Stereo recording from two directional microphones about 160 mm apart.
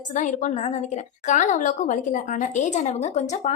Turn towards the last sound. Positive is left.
turn(degrees=45)  # may be behind; listen again after turning